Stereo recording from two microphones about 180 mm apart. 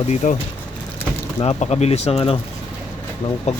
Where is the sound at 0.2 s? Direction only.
40° left (ahead or behind).